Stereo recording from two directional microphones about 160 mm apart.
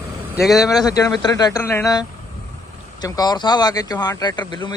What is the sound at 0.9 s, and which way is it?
Speech, 20° left (ahead or behind).